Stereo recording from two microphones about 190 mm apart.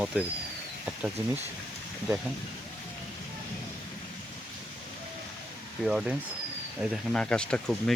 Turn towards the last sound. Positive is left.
turn(degrees=5)  # may be behind; listen again after turning